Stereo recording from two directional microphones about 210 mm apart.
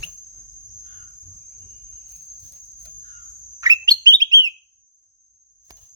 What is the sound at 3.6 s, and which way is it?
Bird, 15° right (ahead or behind).